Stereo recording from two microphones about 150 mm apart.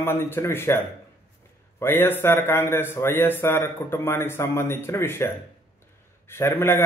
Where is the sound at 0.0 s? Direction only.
15° left (ahead or behind).